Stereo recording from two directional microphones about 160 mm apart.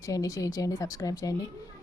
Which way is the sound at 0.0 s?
20° left (ahead or behind).